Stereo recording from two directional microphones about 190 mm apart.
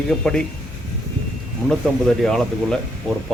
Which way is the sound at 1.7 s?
5° left (ahead or behind).